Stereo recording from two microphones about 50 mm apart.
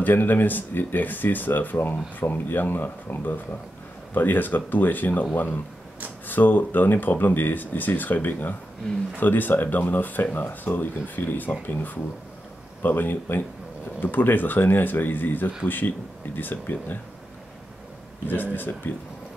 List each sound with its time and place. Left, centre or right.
0.0 s speech: left
18.2 s speech: left